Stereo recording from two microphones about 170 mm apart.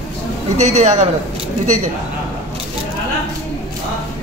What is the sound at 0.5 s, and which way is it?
Speech, 40° right (ahead or behind).